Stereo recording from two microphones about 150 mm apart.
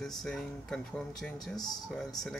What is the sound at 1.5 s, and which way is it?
Speech, 25° left (ahead or behind).